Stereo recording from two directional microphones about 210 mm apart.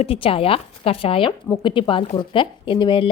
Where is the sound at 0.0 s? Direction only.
25° left (ahead or behind).